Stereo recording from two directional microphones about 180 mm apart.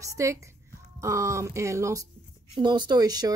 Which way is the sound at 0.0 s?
15° right (ahead or behind).